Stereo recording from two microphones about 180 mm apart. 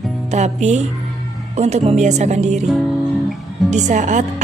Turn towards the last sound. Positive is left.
turn(degrees=-40)  # may be behind; listen again after turning